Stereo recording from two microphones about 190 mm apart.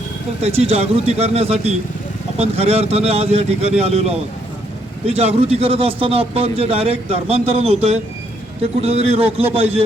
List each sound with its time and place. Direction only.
0.4 s a man's voice: 35° right (ahead or behind)